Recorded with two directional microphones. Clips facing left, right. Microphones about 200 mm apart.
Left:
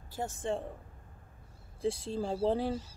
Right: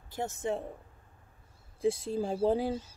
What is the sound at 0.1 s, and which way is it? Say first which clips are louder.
Speech: right 2 dB; 20° right (ahead or behind).